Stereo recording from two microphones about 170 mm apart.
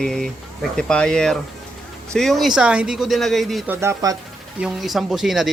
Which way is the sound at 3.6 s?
15° right (ahead or behind).